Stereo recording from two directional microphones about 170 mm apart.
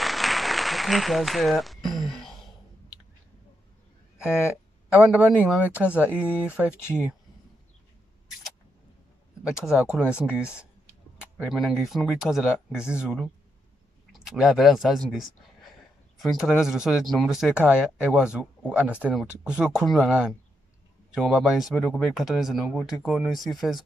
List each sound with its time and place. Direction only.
0.0 s applause: centre (ahead or behind)
4.9 s a man's voice: 5° right (ahead or behind)
9.7 s speech: 5° right (ahead or behind)
16.2 s speech: centre (ahead or behind)